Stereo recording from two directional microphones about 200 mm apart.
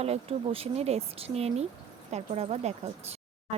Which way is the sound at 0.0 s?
30° right (ahead or behind).